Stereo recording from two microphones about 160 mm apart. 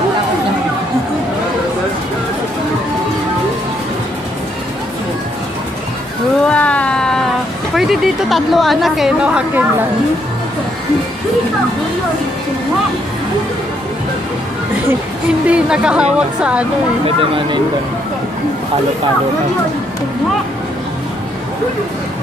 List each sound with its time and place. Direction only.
6.4 s a sound: 10° left (ahead or behind)
7.7 s a woman's voice: centre (ahead or behind)
14.9 s a woman's voice: 10° right (ahead or behind)
17.0 s speech: 35° right (ahead or behind)